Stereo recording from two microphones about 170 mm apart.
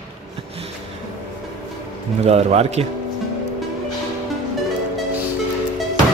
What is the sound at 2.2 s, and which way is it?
Speech, 40° right (ahead or behind).